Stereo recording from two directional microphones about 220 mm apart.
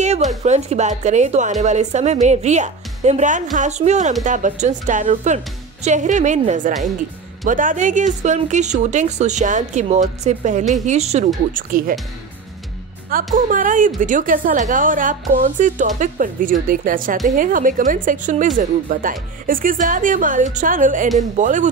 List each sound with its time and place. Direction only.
0.0 s a woman's voice: 30° right (ahead or behind)
13.1 s a woman's voice: 35° right (ahead or behind)